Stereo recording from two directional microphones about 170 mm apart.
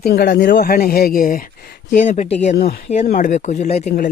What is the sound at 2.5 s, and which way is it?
Speech, 60° left (ahead or behind).